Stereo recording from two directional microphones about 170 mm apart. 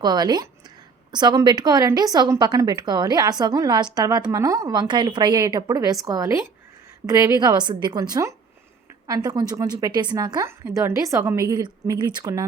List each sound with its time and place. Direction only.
0.0 s a woman's voice: 25° right (ahead or behind)